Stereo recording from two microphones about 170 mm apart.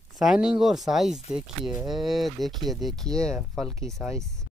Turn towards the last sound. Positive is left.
turn(degrees=5)  # may be behind; listen again after turning